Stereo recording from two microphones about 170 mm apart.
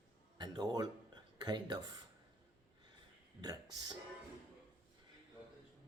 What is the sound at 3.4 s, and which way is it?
Speech, 25° right (ahead or behind).